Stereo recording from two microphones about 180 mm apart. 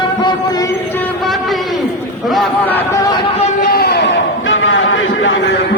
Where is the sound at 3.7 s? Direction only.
60° left (ahead or behind).